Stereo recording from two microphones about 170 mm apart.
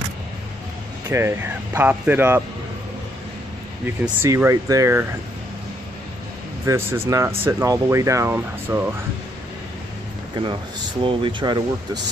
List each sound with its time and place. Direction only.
1.1 s speech: 15° right (ahead or behind)
4.2 s speech: 15° right (ahead or behind)
6.6 s speech: 15° right (ahead or behind)
11.0 s speech: 30° right (ahead or behind)